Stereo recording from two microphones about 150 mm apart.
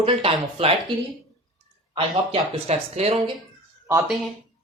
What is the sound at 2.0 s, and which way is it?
Speech, 40° right (ahead or behind).